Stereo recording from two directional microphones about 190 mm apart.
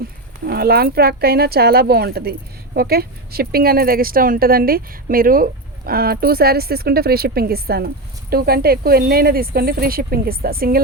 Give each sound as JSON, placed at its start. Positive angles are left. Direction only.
{"t": 0.4, "sound": "a woman's voice", "side_deg": -55}